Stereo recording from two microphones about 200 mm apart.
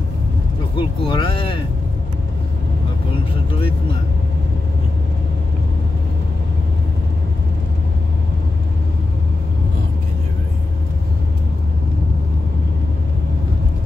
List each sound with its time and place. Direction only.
0.7 s speech: 25° left (ahead or behind)